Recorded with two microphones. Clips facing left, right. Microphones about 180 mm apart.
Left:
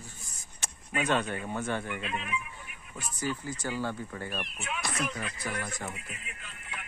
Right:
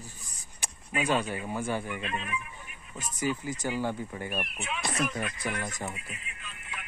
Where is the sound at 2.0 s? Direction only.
10° left (ahead or behind).